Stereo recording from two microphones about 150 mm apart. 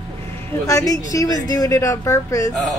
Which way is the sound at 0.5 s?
20° left (ahead or behind).